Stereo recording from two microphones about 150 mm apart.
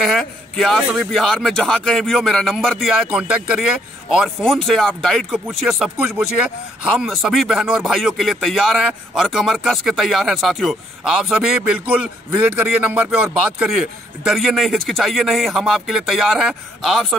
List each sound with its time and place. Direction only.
0.0 s a man's voice: centre (ahead or behind)
12.9 s a man's voice: 10° right (ahead or behind)